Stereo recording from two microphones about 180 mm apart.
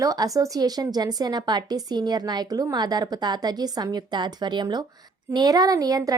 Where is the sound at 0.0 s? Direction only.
20° right (ahead or behind).